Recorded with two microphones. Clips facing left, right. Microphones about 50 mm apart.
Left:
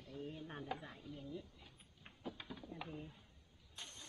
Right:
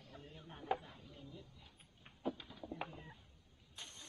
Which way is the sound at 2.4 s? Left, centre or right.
Centre.